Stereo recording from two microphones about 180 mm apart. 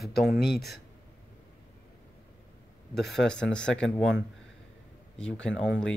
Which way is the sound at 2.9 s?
Centre (ahead or behind).